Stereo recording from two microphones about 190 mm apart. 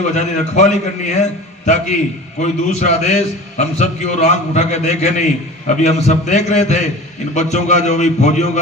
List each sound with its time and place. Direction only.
0.1 s a man's voice: 40° left (ahead or behind)